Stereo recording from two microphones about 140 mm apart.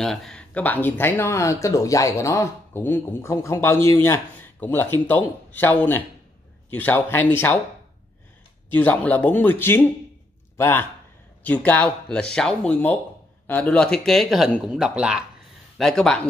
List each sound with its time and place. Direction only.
0.0 s speech: 5° left (ahead or behind)
8.7 s a man's voice: 10° left (ahead or behind)